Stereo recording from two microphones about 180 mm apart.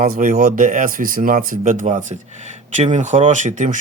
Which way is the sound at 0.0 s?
45° right (ahead or behind).